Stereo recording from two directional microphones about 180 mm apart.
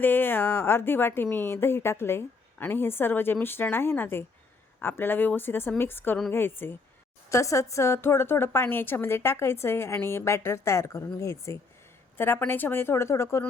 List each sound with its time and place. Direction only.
0.0 s a woman's voice: 10° left (ahead or behind)